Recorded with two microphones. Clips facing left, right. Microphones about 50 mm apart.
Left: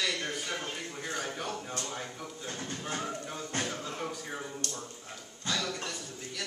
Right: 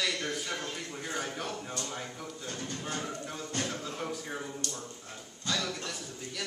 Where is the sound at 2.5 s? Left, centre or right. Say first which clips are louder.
Even; left.